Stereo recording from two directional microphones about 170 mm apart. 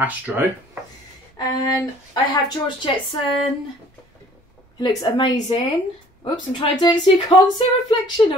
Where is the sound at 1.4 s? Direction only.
20° left (ahead or behind).